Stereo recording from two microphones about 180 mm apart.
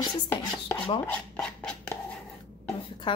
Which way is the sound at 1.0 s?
5° left (ahead or behind).